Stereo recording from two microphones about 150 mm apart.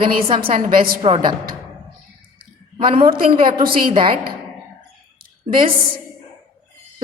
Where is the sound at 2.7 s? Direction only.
35° right (ahead or behind).